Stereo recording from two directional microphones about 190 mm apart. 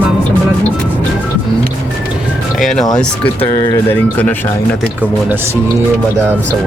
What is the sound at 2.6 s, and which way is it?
Speech, centre (ahead or behind).